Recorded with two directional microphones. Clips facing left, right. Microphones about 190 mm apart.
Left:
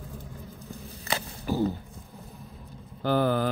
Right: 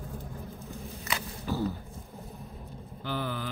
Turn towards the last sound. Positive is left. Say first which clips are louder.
# left 10 dB
turn(degrees=45)  # may be behind; listen again after turning